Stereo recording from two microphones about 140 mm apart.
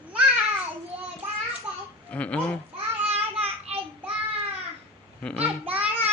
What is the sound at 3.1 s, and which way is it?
Child singing, 45° right (ahead or behind).